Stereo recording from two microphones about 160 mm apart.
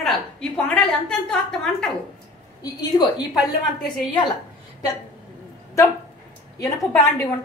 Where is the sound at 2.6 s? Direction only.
25° left (ahead or behind).